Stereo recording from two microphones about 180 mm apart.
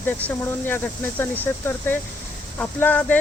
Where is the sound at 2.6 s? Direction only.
10° left (ahead or behind).